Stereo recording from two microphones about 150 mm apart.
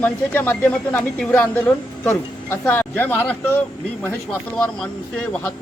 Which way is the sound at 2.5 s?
15° left (ahead or behind).